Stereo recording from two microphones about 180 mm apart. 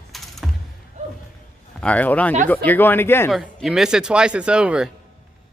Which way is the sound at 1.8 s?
10° left (ahead or behind).